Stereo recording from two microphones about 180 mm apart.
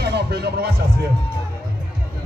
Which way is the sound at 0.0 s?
65° right (ahead or behind).